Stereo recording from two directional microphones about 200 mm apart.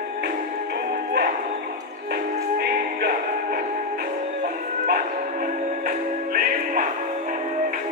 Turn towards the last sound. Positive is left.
turn(degrees=-45)  # may be behind; listen again after turning